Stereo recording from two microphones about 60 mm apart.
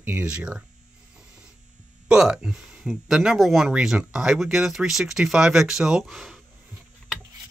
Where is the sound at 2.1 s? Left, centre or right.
Centre.